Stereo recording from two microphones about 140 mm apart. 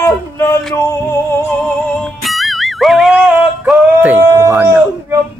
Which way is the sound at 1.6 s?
5° left (ahead or behind).